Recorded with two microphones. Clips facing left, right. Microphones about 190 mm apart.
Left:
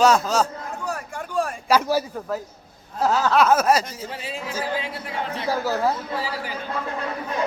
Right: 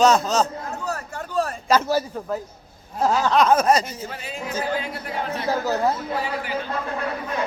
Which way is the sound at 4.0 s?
30° left (ahead or behind).